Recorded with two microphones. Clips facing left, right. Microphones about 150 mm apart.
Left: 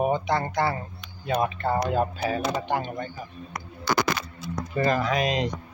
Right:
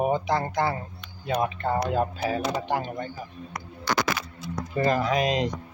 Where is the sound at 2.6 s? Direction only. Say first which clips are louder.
Even; 5° right (ahead or behind).